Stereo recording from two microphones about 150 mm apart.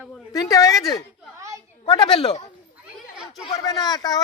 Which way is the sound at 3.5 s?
25° left (ahead or behind).